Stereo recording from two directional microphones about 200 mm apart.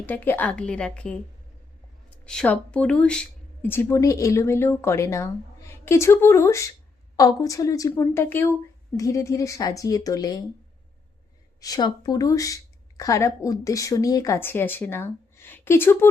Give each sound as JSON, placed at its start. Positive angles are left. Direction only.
{"t": 0.0, "sound": "a woman's voice", "side_deg": 10}
{"t": 11.6, "sound": "speech", "side_deg": 20}